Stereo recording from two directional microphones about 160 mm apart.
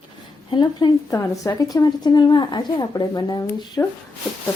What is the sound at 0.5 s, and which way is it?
Speech, 25° left (ahead or behind).